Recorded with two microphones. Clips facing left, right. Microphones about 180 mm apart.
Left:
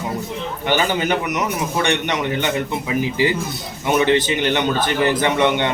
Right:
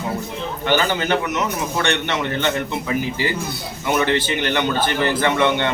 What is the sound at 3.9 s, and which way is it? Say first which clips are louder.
A man's voice: left 3 dB; 15° left (ahead or behind).